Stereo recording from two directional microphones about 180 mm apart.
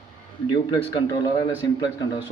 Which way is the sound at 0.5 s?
25° left (ahead or behind).